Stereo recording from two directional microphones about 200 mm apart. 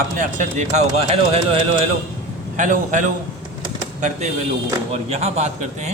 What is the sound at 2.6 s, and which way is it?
Speech, 40° right (ahead or behind).